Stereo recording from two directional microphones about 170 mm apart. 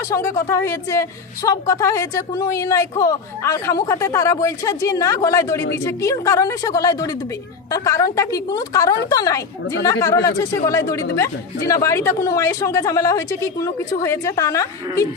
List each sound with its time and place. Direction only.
0.1 s a woman's voice: 15° left (ahead or behind)